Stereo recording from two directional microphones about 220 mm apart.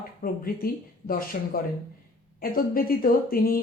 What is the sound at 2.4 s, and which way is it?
Speech, 40° left (ahead or behind).